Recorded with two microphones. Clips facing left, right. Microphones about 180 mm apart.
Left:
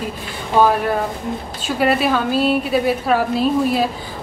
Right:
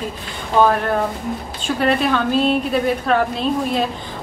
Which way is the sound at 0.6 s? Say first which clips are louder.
Even; 5° left (ahead or behind).